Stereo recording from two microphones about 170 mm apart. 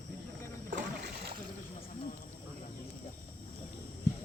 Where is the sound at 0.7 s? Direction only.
90° right.